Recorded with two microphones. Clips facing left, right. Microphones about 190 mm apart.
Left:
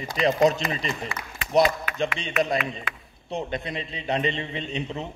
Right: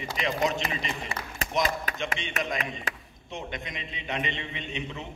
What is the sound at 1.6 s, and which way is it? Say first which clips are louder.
A man's voice: left 6 dB; 40° right (ahead or behind).